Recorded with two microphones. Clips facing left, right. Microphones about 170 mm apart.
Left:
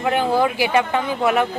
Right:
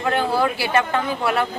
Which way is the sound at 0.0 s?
15° left (ahead or behind).